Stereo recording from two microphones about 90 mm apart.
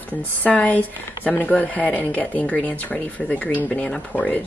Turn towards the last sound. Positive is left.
turn(degrees=15)  # may be behind; listen again after turning